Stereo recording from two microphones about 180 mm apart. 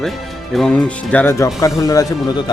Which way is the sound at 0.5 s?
5° left (ahead or behind).